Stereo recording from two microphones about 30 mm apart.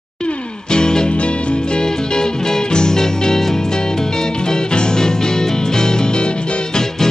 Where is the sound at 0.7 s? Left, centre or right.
Left.